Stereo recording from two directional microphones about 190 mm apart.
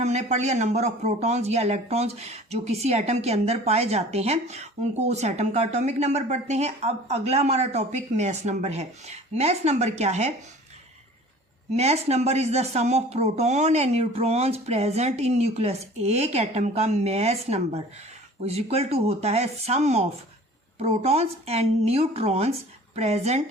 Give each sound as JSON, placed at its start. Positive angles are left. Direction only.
{"t": 0.0, "sound": "speech", "side_deg": -35}
{"t": 11.8, "sound": "speech", "side_deg": -35}